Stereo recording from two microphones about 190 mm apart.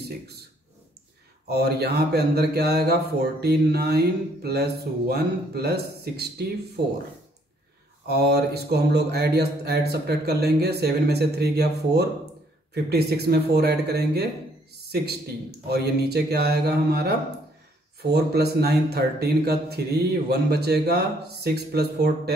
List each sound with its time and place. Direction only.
1.5 s speech: 60° right (ahead or behind)
8.1 s speech: 60° right (ahead or behind)
15.7 s speech: 60° right (ahead or behind)